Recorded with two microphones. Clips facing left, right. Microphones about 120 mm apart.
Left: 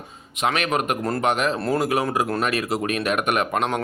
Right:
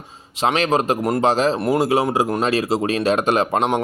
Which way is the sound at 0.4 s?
30° right (ahead or behind).